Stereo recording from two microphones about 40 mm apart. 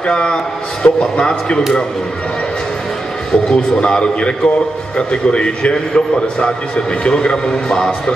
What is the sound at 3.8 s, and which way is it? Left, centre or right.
A man's voice, left.